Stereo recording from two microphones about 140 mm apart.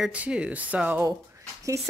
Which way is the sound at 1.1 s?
20° right (ahead or behind).